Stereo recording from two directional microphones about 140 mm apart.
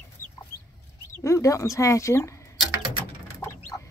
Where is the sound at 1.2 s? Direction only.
20° left (ahead or behind).